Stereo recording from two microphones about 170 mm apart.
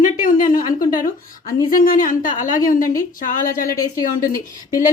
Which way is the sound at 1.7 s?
55° left (ahead or behind).